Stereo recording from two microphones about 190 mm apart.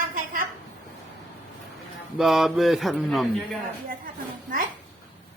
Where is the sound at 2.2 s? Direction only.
Centre (ahead or behind).